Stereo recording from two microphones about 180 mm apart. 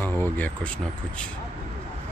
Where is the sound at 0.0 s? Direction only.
10° left (ahead or behind).